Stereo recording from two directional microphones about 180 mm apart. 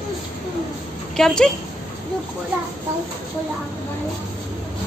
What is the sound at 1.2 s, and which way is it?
Speech, 5° left (ahead or behind).